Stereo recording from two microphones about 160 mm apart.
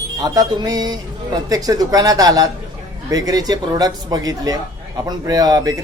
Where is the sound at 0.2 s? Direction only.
25° right (ahead or behind).